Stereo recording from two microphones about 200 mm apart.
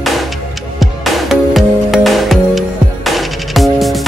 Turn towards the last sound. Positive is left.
turn(degrees=0)  # may be behind; listen again after turning